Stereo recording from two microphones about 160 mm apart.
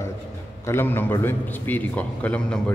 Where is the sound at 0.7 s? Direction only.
15° left (ahead or behind).